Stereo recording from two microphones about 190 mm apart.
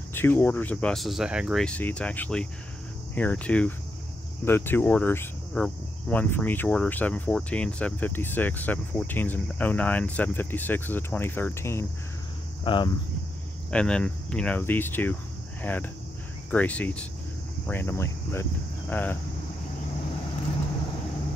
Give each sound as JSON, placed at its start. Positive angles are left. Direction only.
{"t": 0.1, "sound": "speech", "side_deg": 10}
{"t": 12.6, "sound": "speech", "side_deg": 25}
{"t": 13.7, "sound": "speech", "side_deg": 5}